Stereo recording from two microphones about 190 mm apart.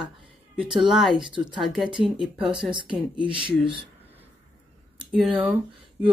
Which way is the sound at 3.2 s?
25° right (ahead or behind).